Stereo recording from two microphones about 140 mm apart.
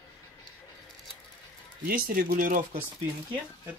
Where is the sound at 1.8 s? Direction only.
90° right.